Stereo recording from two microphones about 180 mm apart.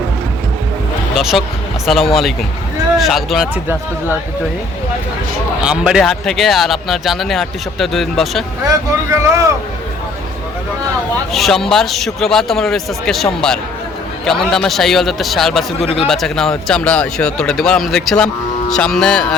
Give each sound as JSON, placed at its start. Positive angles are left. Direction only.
{"t": 1.1, "sound": "speech", "side_deg": 0}
{"t": 5.6, "sound": "speech", "side_deg": -5}
{"t": 8.6, "sound": "speech", "side_deg": -15}
{"t": 11.3, "sound": "speech", "side_deg": 0}